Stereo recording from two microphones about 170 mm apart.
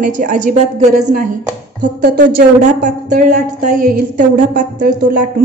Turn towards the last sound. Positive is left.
turn(degrees=-60)  # may be behind; listen again after turning